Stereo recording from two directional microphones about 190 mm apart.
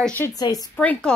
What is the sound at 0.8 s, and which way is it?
Speech, 5° left (ahead or behind).